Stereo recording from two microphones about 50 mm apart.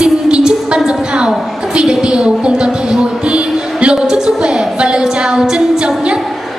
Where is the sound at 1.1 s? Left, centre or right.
Centre.